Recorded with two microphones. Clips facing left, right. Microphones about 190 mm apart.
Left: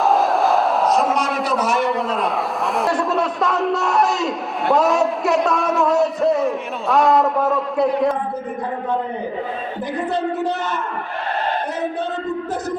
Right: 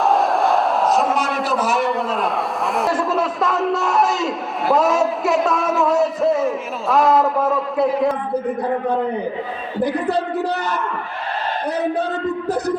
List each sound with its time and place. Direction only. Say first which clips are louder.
0.0 s a sound: even; centre (ahead or behind)
2.7 s a man's voice: even; centre (ahead or behind)
9.8 s a man's voice: right 3 dB; 35° right (ahead or behind)